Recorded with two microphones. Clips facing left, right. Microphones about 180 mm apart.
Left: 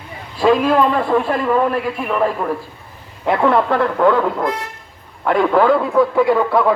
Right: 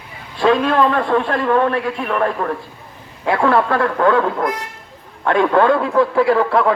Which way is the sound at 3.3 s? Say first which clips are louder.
Left 1 dB; 20° left (ahead or behind).